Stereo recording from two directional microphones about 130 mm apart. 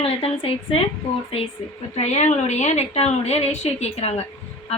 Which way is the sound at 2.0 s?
60° left (ahead or behind).